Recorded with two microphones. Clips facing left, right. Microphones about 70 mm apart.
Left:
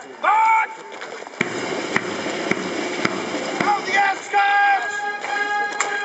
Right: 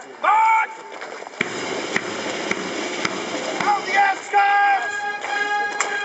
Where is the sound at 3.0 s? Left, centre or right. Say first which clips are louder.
Left 2 dB; left.